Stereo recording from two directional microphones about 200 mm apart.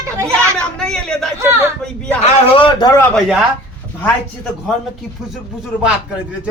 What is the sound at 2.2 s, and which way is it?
Speech, 25° left (ahead or behind).